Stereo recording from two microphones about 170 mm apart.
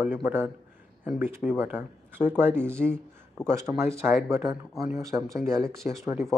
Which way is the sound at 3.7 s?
Centre (ahead or behind).